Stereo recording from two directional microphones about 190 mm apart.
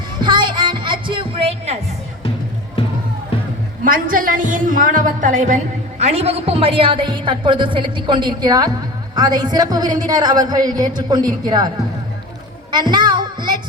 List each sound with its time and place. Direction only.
0.2 s music: 25° right (ahead or behind)
3.8 s a woman's voice: 45° right (ahead or behind); by 11.7 s 20° right (ahead or behind)
12.9 s child singing: 25° right (ahead or behind)